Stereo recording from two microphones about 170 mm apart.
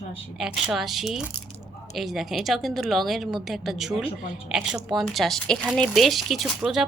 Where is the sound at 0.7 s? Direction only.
Centre (ahead or behind).